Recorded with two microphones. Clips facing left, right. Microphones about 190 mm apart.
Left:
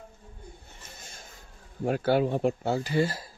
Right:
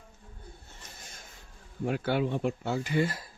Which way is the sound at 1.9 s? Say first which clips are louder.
Left 4 dB; 40° left (ahead or behind).